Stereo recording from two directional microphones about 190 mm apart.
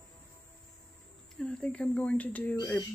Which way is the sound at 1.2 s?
5° left (ahead or behind).